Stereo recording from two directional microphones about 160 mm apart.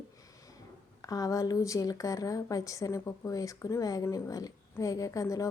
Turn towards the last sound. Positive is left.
turn(degrees=20)  # may be behind; listen again after turning